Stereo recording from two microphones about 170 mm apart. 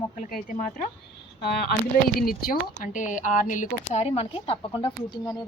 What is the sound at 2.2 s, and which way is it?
Speech, 60° left (ahead or behind).